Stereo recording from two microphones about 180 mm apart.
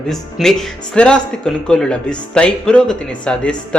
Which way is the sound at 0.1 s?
Centre (ahead or behind).